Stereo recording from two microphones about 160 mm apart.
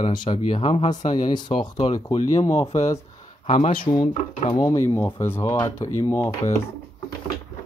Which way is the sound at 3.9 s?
30° left (ahead or behind).